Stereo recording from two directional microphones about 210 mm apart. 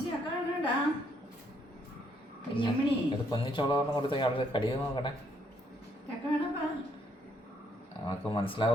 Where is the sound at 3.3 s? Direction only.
20° left (ahead or behind).